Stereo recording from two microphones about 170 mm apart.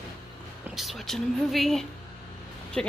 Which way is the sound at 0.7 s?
Centre (ahead or behind).